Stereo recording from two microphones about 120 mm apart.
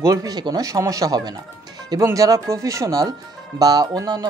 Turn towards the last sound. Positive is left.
turn(degrees=-35)  # may be behind; listen again after turning